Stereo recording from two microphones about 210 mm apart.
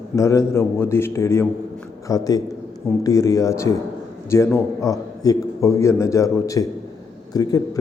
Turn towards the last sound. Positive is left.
turn(degrees=15)  # may be behind; listen again after turning